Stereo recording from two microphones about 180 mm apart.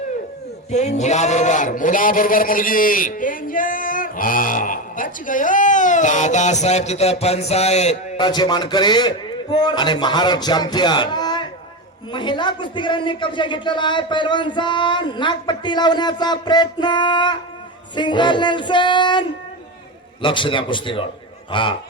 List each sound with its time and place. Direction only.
0.7 s a man's voice: 40° left (ahead or behind)
8.2 s a man's voice: 25° left (ahead or behind)
20.2 s a man's voice: 25° left (ahead or behind)